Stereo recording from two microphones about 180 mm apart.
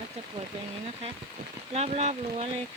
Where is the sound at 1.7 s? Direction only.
35° right (ahead or behind).